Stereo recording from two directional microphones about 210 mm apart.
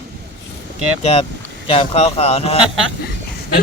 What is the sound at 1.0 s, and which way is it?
Speech, 30° left (ahead or behind).